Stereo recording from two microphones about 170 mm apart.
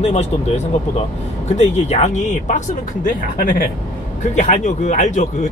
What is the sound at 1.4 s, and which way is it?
Speech, 40° left (ahead or behind).